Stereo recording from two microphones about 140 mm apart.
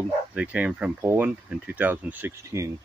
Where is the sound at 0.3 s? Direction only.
10° right (ahead or behind).